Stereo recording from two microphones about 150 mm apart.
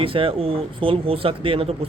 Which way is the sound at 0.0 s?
35° right (ahead or behind).